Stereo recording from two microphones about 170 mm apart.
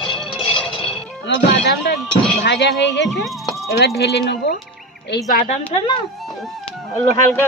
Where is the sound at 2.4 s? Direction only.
85° left.